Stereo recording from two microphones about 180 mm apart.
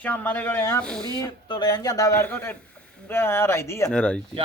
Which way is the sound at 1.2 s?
25° left (ahead or behind).